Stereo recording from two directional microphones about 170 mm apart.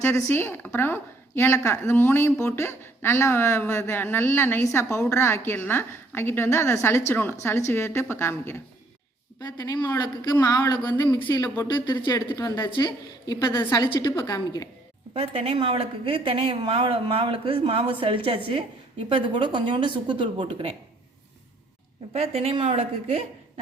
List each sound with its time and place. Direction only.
0.0 s a woman's voice: 15° left (ahead or behind)
15.1 s speech: 35° right (ahead or behind)
22.1 s speech: 35° right (ahead or behind)